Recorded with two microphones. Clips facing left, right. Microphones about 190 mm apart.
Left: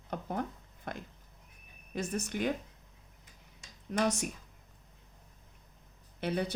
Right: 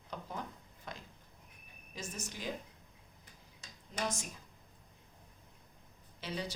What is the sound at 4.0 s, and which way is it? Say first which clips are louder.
Speech: left 7 dB; 65° left (ahead or behind).